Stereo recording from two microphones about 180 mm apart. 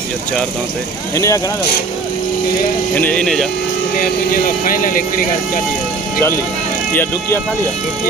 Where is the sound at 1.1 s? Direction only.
15° left (ahead or behind).